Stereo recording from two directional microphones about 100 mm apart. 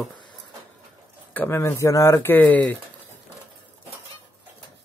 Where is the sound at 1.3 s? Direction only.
15° left (ahead or behind).